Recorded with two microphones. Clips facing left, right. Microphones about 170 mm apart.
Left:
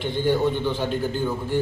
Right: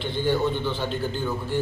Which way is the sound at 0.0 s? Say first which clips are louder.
Left 2 dB; 15° left (ahead or behind).